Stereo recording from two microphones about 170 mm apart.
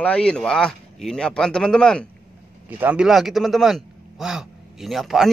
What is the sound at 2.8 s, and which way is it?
Speech, 5° right (ahead or behind).